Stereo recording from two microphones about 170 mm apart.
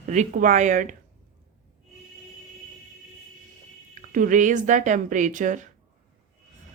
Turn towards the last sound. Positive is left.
turn(degrees=-50)  # may be behind; listen again after turning